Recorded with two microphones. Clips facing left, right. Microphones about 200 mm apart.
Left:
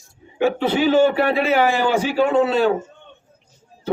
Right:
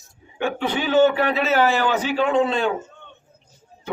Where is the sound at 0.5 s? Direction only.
40° left (ahead or behind).